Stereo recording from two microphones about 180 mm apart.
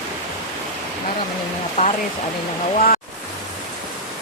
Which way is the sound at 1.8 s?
35° left (ahead or behind).